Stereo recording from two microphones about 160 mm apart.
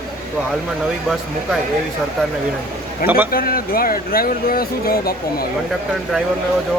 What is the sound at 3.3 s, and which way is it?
Speech, 65° left (ahead or behind).